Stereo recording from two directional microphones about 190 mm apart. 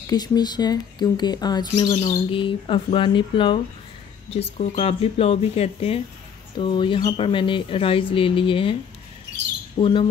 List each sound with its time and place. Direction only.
0.0 s speech: 20° left (ahead or behind)
4.6 s speech: 30° left (ahead or behind)
9.8 s speech: 25° left (ahead or behind)